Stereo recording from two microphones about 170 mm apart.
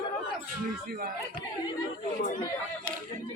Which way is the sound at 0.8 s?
65° right (ahead or behind).